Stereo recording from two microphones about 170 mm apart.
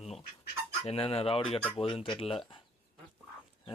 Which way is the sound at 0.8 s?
35° left (ahead or behind).